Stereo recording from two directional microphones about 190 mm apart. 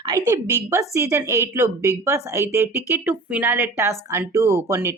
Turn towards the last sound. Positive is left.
turn(degrees=-15)  # may be behind; listen again after turning